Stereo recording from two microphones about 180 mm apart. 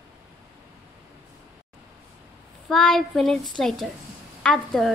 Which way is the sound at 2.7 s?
Centre (ahead or behind).